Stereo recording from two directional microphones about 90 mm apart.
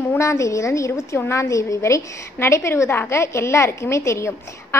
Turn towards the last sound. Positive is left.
turn(degrees=30)  # may be behind; listen again after turning